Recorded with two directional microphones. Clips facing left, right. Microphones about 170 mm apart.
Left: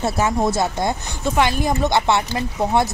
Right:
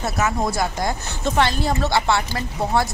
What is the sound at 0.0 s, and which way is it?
Speech, 25° left (ahead or behind).